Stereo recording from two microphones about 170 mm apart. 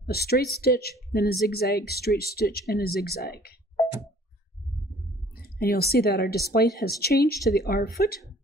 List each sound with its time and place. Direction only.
0.0 s speech: 65° left (ahead or behind)
5.3 s speech: 65° left (ahead or behind)